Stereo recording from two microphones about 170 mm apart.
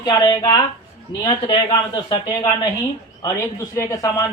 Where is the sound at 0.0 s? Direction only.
25° left (ahead or behind).